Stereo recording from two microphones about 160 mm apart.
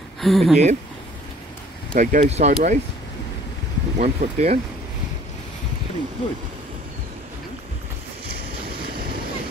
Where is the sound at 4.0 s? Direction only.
45° right (ahead or behind).